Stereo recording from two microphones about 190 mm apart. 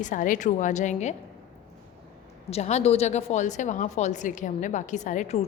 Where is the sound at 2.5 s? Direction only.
35° left (ahead or behind).